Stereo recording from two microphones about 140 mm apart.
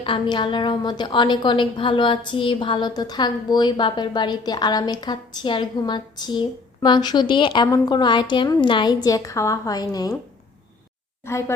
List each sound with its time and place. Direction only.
0.0 s a woman's voice: 35° left (ahead or behind)
11.3 s a woman's voice: 20° left (ahead or behind)